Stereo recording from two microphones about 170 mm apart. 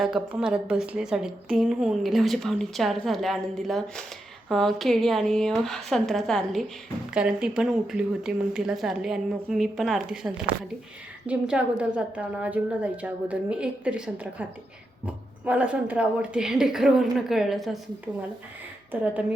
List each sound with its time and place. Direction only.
0.0 s a woman's voice: 5° right (ahead or behind)